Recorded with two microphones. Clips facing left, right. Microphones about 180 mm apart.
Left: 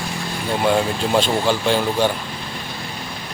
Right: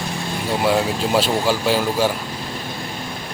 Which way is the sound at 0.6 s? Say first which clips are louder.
Left 1 dB; 5° right (ahead or behind).